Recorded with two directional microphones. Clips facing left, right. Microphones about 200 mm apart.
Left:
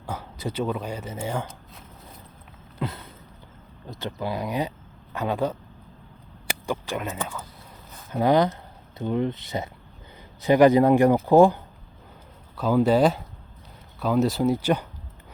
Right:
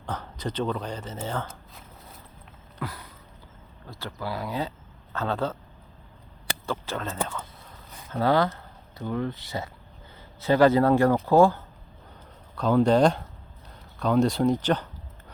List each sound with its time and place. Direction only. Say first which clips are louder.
0.0 s speech: left 1 dB; 10° left (ahead or behind)
2.7 s a sound: left 4 dB; 25° left (ahead or behind)
3.8 s speech: left 4 dB; 20° left (ahead or behind)
12.5 s speech: even; 5° left (ahead or behind)